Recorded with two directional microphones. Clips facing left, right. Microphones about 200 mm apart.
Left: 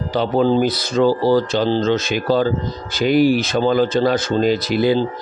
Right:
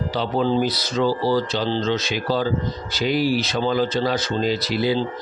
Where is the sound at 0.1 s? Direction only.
50° left (ahead or behind).